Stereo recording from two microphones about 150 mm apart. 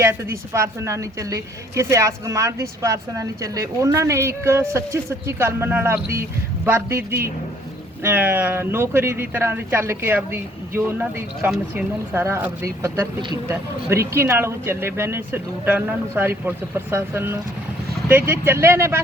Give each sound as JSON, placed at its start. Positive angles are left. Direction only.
{"t": 0.0, "sound": "a woman's voice", "side_deg": -15}
{"t": 8.0, "sound": "speech", "side_deg": -15}